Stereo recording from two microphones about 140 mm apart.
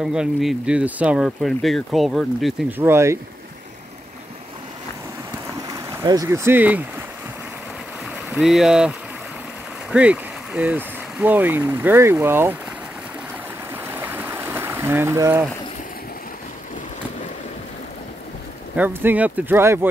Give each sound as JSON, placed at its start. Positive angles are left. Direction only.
{"t": 0.0, "sound": "speech", "side_deg": -5}
{"t": 2.8, "sound": "speech", "side_deg": -20}
{"t": 5.6, "sound": "speech", "side_deg": -25}
{"t": 8.4, "sound": "speech", "side_deg": 0}
{"t": 13.8, "sound": "stream", "side_deg": -15}
{"t": 18.8, "sound": "speech", "side_deg": -15}